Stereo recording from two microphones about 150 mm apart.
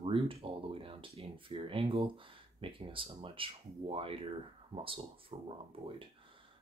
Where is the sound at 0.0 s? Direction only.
40° right (ahead or behind).